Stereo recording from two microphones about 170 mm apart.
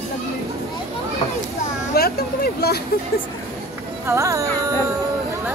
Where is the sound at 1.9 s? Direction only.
65° left (ahead or behind).